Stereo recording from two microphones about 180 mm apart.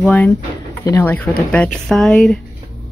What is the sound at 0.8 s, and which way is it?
Speech, 20° left (ahead or behind).